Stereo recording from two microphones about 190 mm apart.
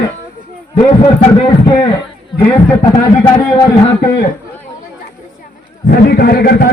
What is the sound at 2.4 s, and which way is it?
Speech, 15° left (ahead or behind).